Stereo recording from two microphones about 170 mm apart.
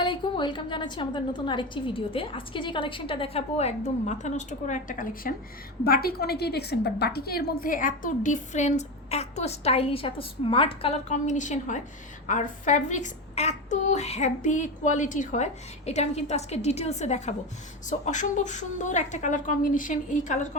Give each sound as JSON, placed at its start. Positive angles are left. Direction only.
{"t": 0.0, "sound": "a woman's voice", "side_deg": 30}
{"t": 5.8, "sound": "a woman's voice", "side_deg": 65}